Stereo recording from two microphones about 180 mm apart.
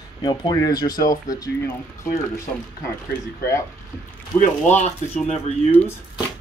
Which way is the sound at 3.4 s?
15° left (ahead or behind).